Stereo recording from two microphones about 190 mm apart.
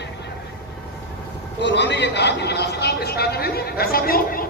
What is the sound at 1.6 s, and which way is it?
A man's voice, 65° left (ahead or behind).